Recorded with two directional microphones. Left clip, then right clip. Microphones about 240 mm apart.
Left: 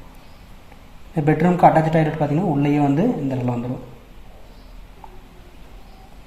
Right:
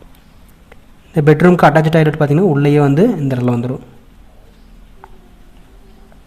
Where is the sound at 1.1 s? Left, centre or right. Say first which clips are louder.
Right 9 dB; right.